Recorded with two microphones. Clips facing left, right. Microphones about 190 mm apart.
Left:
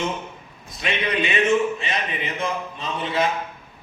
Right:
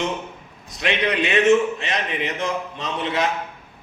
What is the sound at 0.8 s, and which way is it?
A man's voice, 70° right (ahead or behind).